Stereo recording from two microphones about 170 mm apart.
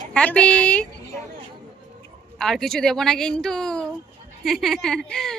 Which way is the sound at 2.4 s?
Centre (ahead or behind).